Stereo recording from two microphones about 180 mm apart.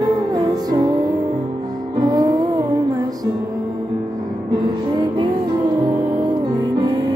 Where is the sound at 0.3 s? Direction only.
20° right (ahead or behind).